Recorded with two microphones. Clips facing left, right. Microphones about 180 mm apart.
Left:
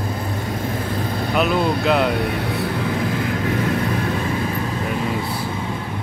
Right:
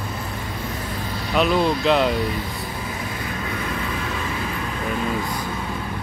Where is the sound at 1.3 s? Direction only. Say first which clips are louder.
Right 1 dB; 5° left (ahead or behind).